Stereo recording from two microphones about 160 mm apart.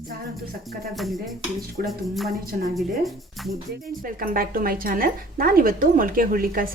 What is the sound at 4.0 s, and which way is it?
A woman's voice, 60° right (ahead or behind).